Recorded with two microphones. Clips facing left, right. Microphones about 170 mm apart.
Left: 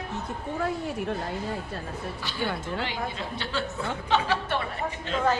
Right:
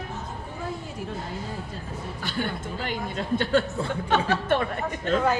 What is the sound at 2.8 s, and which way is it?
A woman's voice, 50° right (ahead or behind).